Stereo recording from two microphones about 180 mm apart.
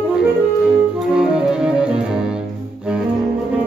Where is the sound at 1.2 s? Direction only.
5° right (ahead or behind).